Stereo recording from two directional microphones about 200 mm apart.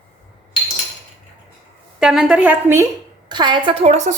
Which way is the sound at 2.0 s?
Centre (ahead or behind).